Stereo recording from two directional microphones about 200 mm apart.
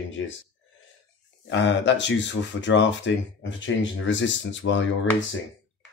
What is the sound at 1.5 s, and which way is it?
Speech, 60° left (ahead or behind).